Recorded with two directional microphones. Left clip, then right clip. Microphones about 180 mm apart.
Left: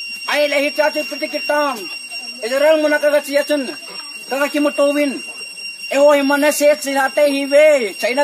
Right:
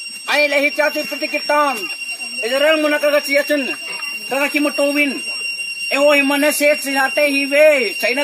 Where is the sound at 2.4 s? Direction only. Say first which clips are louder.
Left 1 dB; 15° left (ahead or behind).